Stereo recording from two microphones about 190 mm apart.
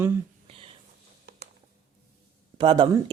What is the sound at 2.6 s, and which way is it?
Speech, 20° right (ahead or behind).